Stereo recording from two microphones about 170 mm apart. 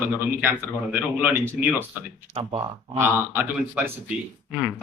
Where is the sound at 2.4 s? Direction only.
35° right (ahead or behind).